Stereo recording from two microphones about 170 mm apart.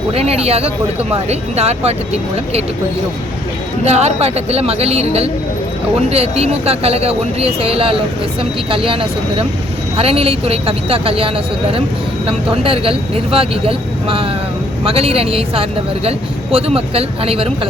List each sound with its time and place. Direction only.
0.1 s speech: 35° right (ahead or behind)
3.8 s speech: 40° right (ahead or behind)
12.5 s speech: 35° right (ahead or behind)